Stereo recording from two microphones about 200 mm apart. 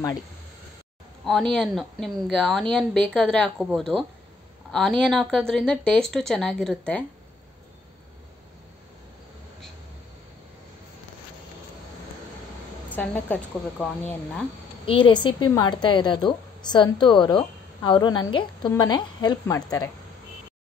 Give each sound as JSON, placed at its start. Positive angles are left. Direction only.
{"t": 1.2, "sound": "speech", "side_deg": 0}
{"t": 12.9, "sound": "a woman's voice", "side_deg": 10}
{"t": 14.9, "sound": "a woman's voice", "side_deg": 25}